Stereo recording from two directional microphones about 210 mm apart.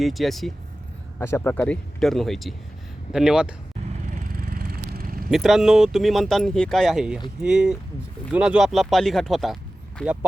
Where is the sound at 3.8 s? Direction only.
35° right (ahead or behind).